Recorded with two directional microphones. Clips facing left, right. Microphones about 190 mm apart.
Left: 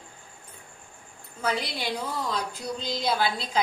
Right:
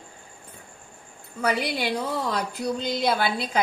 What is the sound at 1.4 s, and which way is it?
A woman's voice, 60° right (ahead or behind).